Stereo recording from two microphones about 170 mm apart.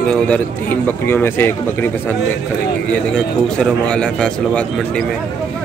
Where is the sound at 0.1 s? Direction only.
10° left (ahead or behind).